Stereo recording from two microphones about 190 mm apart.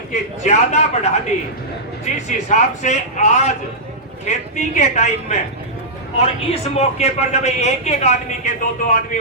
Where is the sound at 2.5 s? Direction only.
40° left (ahead or behind).